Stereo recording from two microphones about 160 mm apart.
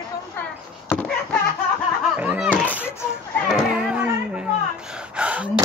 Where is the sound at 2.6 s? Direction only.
10° right (ahead or behind).